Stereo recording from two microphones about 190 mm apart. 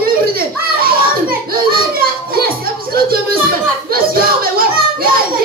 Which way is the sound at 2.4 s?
50° right (ahead or behind).